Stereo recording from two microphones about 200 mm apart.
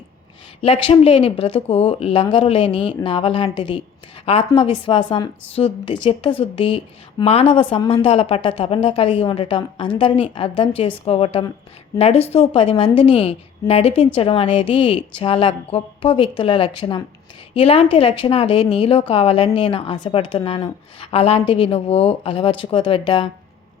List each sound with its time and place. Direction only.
0.6 s a woman's voice: 30° left (ahead or behind)